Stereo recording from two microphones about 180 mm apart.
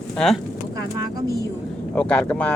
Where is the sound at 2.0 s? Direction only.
5° left (ahead or behind).